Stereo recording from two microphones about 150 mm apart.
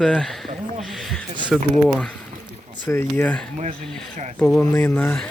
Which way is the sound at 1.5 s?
5° left (ahead or behind).